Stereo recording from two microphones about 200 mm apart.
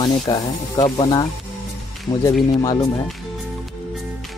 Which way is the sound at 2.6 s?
20° left (ahead or behind).